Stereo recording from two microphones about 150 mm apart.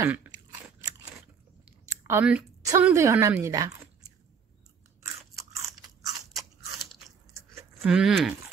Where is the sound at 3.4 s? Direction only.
25° right (ahead or behind).